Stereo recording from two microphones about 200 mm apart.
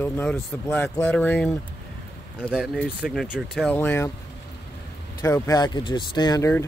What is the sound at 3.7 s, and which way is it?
Speech, 10° left (ahead or behind).